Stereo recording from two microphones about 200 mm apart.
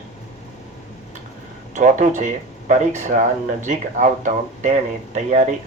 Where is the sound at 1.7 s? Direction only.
40° right (ahead or behind).